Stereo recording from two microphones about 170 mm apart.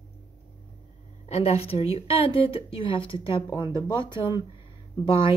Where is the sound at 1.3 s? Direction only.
35° left (ahead or behind).